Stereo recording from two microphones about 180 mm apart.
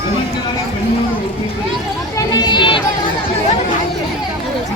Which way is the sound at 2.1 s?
20° left (ahead or behind).